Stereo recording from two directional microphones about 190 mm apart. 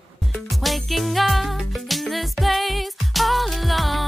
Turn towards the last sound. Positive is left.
turn(degrees=0)  # may be behind; listen again after turning